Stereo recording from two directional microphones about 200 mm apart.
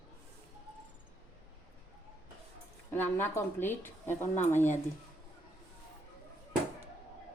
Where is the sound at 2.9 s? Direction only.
10° left (ahead or behind).